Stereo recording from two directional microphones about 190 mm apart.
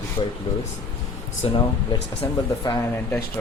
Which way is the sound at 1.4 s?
30° left (ahead or behind).